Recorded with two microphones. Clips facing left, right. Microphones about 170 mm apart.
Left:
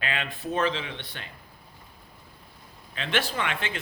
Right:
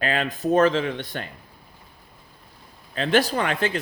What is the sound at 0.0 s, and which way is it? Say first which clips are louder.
Speech: right 8 dB; 40° right (ahead or behind).